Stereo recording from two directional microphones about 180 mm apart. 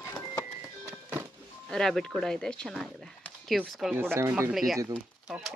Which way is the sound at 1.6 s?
Centre (ahead or behind).